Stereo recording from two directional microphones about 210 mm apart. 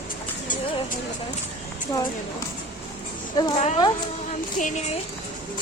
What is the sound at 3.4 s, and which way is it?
Speech, 30° left (ahead or behind).